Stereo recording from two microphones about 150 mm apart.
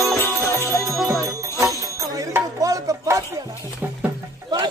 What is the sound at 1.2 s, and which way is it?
Jingle bell, 20° right (ahead or behind).